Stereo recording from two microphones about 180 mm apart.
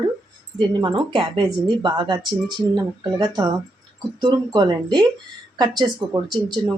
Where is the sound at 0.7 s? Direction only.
25° right (ahead or behind).